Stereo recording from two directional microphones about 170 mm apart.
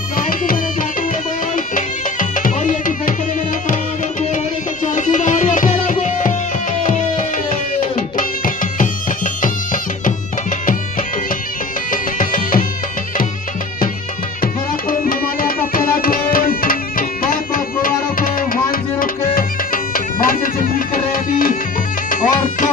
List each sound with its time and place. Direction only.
1.8 s music: 50° left (ahead or behind)
4.8 s music: 45° left (ahead or behind)
11.9 s music: 55° left (ahead or behind)
14.4 s tabla: 55° left (ahead or behind)
17.8 s music: 55° left (ahead or behind)